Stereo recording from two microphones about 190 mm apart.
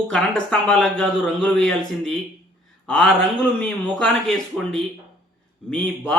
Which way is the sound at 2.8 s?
5° left (ahead or behind).